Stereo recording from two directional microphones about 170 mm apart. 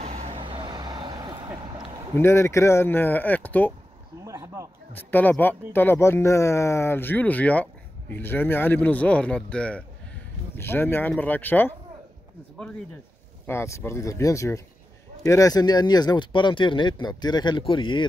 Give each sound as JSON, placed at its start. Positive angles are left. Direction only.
{"t": 0.0, "sound": "vehicle", "side_deg": -35}
{"t": 2.1, "sound": "speech", "side_deg": 15}
{"t": 4.2, "sound": "speech", "side_deg": -15}
{"t": 4.9, "sound": "speech", "side_deg": 10}
{"t": 13.5, "sound": "speech", "side_deg": 15}